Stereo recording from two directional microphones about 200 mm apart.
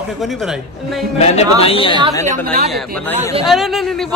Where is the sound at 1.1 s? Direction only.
30° left (ahead or behind).